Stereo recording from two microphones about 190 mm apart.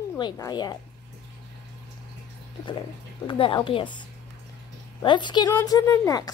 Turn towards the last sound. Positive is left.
turn(degrees=15)  # may be behind; listen again after turning